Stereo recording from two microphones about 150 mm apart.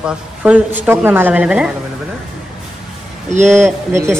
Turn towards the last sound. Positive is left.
turn(degrees=-15)  # may be behind; listen again after turning